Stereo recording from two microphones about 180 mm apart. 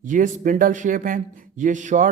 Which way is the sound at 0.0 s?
45° right (ahead or behind).